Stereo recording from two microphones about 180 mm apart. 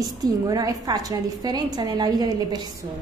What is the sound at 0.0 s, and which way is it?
A woman's voice, 20° right (ahead or behind).